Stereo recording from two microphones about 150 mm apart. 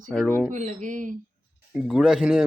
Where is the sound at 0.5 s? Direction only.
55° right (ahead or behind).